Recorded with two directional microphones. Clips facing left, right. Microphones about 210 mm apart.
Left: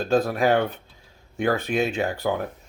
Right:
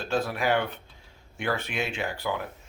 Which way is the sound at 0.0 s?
40° left (ahead or behind).